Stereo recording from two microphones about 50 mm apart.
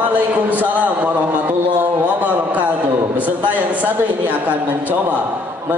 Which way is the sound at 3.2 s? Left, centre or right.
Right.